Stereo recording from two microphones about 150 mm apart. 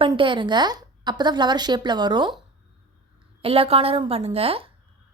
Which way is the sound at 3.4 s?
40° right (ahead or behind).